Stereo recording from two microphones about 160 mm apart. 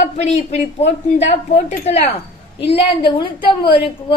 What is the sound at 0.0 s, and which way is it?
A woman's voice, 45° left (ahead or behind).